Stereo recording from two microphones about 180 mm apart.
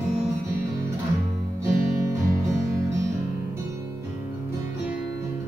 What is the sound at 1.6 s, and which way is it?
Music, 15° right (ahead or behind).